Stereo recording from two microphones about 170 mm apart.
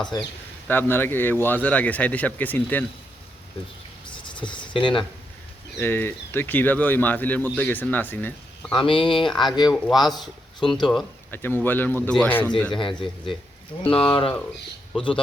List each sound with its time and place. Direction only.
0.1 s speech: 25° left (ahead or behind)
0.7 s speech: 10° left (ahead or behind)
4.1 s a sound: 30° left (ahead or behind)
5.8 s speech: 10° left (ahead or behind)
8.7 s speech: 30° left (ahead or behind)
11.3 s speech: 10° left (ahead or behind)
12.7 s speech: 30° left (ahead or behind)